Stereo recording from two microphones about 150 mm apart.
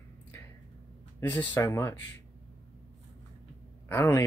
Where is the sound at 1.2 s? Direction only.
15° left (ahead or behind).